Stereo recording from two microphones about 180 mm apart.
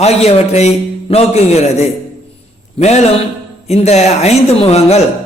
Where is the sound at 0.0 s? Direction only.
35° left (ahead or behind).